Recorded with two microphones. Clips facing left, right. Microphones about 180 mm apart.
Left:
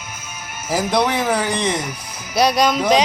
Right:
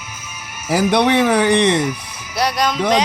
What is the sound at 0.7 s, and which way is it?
Speech, 65° right (ahead or behind).